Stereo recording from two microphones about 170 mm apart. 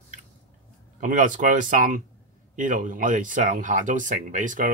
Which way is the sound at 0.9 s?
50° right (ahead or behind).